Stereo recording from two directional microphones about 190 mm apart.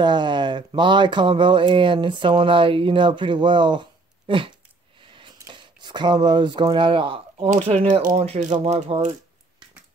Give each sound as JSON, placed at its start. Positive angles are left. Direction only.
{"t": 0.0, "sound": "speech", "side_deg": -25}